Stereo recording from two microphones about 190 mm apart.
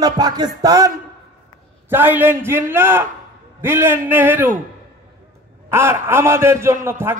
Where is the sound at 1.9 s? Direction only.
10° right (ahead or behind).